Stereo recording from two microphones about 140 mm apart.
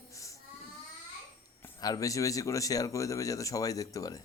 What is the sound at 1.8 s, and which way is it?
Speech, 25° left (ahead or behind).